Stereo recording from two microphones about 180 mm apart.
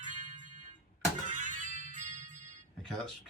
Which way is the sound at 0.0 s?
45° right (ahead or behind).